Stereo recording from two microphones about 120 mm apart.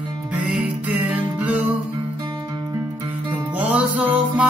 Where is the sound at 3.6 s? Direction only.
10° right (ahead or behind).